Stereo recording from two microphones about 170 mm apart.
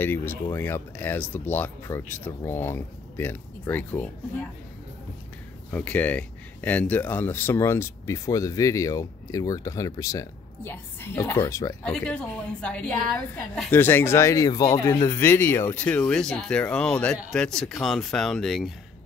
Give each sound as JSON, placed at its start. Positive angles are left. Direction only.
{"t": 0.0, "sound": "speech", "side_deg": 10}
{"t": 5.7, "sound": "speech", "side_deg": 10}
{"t": 11.8, "sound": "speech", "side_deg": 5}